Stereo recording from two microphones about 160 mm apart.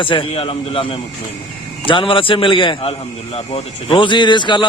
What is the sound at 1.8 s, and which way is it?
A man's voice, 35° left (ahead or behind).